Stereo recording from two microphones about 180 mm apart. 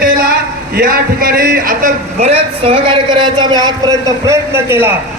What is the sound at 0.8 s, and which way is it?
A man's voice, 55° right (ahead or behind).